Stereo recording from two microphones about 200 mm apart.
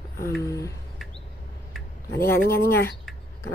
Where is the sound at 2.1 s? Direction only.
15° left (ahead or behind).